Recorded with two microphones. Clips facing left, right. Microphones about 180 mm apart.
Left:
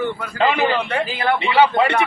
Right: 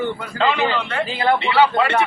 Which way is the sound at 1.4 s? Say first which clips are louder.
Left 1 dB; 15° left (ahead or behind).